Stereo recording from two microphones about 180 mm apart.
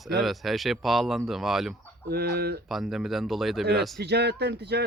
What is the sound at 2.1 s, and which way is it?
Speech, 60° right (ahead or behind).